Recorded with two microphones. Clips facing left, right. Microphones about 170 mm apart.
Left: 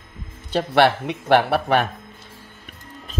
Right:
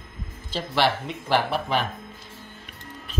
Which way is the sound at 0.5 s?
60° left (ahead or behind).